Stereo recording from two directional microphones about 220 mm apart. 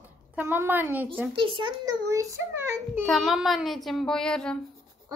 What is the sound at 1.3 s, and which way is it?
A child's voice, 20° right (ahead or behind).